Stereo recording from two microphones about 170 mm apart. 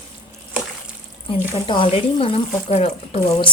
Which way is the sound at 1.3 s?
30° left (ahead or behind).